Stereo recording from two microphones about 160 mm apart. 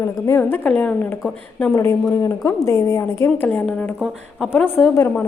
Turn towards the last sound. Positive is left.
turn(degrees=10)  # may be behind; listen again after turning